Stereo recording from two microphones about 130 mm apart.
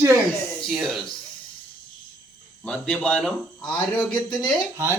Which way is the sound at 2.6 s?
10° left (ahead or behind).